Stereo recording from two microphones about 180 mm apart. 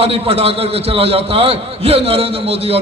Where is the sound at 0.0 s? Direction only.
30° right (ahead or behind).